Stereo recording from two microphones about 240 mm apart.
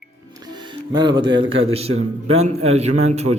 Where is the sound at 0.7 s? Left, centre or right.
Centre.